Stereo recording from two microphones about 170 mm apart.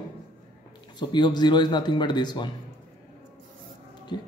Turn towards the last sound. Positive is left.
turn(degrees=25)  # may be behind; listen again after turning